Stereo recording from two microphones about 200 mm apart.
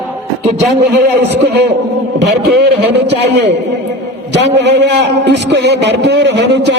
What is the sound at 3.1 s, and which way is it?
A man's voice, 60° right (ahead or behind).